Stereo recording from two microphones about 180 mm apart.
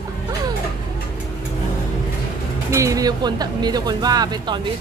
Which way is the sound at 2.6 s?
15° right (ahead or behind).